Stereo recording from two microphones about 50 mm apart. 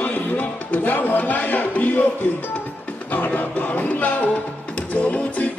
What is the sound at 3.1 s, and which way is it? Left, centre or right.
Music, left.